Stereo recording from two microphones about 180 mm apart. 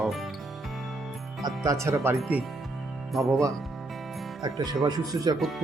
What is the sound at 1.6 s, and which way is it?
Speech, 15° right (ahead or behind).